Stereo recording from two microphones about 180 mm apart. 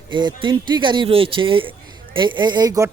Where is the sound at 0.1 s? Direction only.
25° right (ahead or behind).